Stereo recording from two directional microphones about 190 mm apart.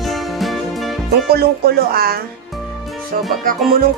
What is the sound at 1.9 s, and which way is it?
Speech, 50° right (ahead or behind).